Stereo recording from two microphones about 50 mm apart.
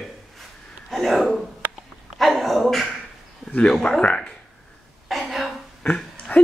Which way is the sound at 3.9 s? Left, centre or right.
Centre.